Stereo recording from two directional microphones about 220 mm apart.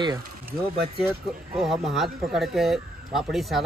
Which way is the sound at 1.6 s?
Centre (ahead or behind).